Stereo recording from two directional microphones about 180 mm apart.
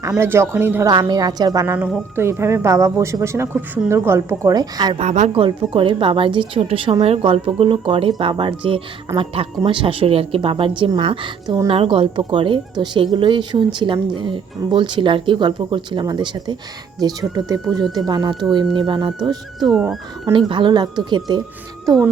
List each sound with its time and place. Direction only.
0.2 s a woman's voice: 15° right (ahead or behind)
0.9 s a woman's voice: 25° right (ahead or behind)
4.9 s speech: 40° right (ahead or behind)
19.5 s speech: centre (ahead or behind)
20.3 s speech: 30° right (ahead or behind)